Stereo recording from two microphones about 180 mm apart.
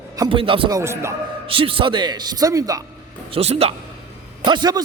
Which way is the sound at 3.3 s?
35° right (ahead or behind).